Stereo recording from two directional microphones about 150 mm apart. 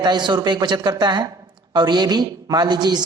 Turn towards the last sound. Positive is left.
turn(degrees=-30)  # may be behind; listen again after turning